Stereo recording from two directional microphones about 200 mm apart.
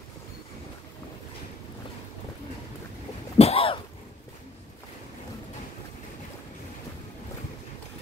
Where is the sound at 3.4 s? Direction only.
30° left (ahead or behind).